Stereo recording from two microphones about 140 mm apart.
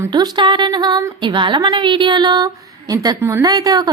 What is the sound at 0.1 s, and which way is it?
A woman's voice, 30° right (ahead or behind).